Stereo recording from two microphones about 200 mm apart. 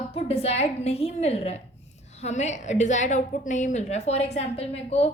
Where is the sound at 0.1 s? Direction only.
30° left (ahead or behind).